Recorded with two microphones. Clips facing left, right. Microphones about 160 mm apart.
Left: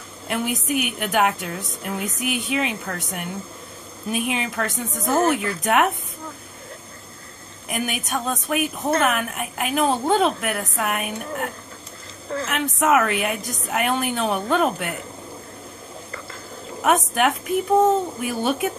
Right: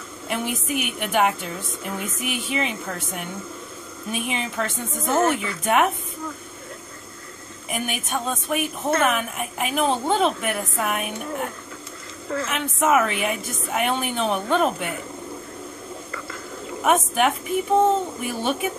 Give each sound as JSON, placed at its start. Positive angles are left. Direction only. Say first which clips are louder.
{"t": 0.3, "sound": "a woman's voice", "louder": "left 2 dB", "side_deg": 0}
{"t": 5.0, "sound": "a woman's voice", "louder": "left 1 dB", "side_deg": 35}
{"t": 5.3, "sound": "a woman's voice", "louder": "left 1 dB", "side_deg": 0}
{"t": 7.7, "sound": "a woman's voice", "louder": "left 1 dB", "side_deg": 0}
{"t": 16.8, "sound": "a woman's voice", "louder": "even", "side_deg": 0}